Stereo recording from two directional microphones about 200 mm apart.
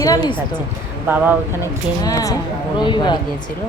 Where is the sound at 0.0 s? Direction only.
15° left (ahead or behind).